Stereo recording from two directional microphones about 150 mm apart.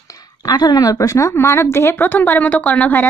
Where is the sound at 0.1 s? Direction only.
25° left (ahead or behind).